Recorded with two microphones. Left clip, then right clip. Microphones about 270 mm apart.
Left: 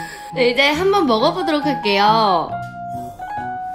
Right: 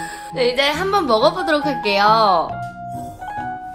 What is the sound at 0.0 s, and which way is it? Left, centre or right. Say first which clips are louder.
A woman's voice: left 2 dB; left.